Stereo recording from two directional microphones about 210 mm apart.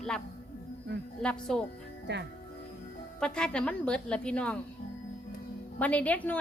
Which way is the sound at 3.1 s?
5° left (ahead or behind).